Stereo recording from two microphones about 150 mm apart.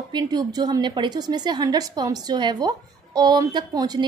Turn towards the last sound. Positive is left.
turn(degrees=-25)  # may be behind; listen again after turning